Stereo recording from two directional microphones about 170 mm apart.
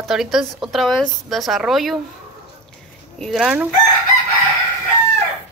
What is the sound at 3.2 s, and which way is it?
Speech, centre (ahead or behind).